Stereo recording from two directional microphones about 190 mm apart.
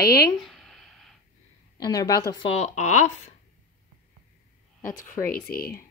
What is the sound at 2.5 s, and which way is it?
Speech, 40° left (ahead or behind).